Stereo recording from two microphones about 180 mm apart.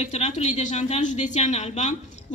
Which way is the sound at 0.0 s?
40° left (ahead or behind).